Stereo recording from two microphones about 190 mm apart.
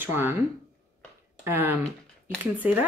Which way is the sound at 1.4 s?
10° right (ahead or behind).